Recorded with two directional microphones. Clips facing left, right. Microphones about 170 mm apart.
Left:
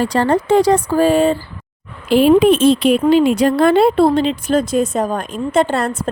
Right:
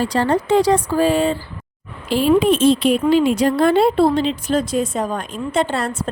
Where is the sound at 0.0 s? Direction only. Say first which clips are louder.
Left 3 dB; 55° left (ahead or behind).